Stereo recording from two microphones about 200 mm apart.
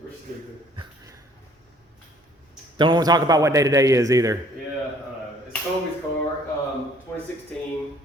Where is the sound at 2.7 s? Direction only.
20° right (ahead or behind).